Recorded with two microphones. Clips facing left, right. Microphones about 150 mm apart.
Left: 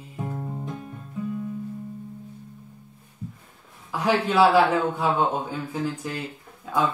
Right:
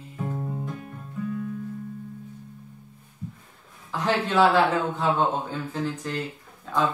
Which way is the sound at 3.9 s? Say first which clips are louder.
Left 2 dB; 10° left (ahead or behind).